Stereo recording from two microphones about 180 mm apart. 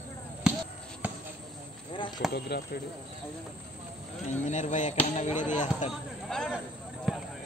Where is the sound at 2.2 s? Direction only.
55° left (ahead or behind).